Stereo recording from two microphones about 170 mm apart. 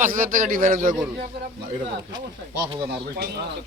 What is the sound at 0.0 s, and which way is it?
Speech, 55° right (ahead or behind).